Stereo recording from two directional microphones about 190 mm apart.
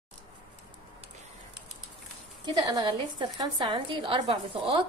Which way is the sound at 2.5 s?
20° right (ahead or behind).